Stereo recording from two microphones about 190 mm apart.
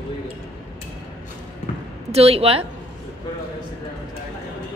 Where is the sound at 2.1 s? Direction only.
30° right (ahead or behind).